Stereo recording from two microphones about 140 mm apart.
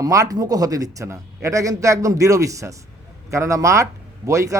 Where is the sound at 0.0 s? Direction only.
25° right (ahead or behind).